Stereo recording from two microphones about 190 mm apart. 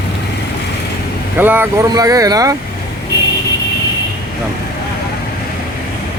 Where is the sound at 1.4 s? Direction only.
10° right (ahead or behind).